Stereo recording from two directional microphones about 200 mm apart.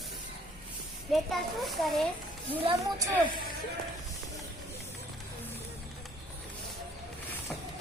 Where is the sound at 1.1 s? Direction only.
Centre (ahead or behind).